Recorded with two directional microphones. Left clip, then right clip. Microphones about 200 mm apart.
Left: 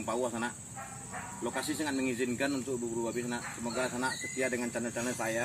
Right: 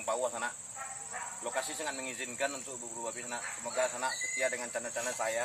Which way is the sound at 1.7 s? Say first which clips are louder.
Left 4 dB; 10° right (ahead or behind).